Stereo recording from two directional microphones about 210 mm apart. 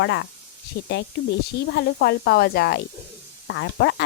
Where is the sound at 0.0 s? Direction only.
55° left (ahead or behind).